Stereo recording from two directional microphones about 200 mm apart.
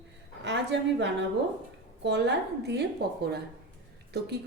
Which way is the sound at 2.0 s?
60° right (ahead or behind).